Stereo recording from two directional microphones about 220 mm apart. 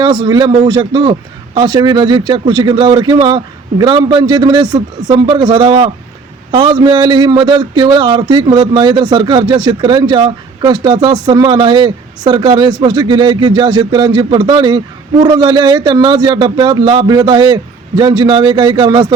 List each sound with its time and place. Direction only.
0.0 s a man's voice: 20° right (ahead or behind)